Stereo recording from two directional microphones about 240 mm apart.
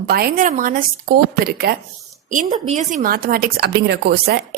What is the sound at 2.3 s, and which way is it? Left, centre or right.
A woman's voice, right.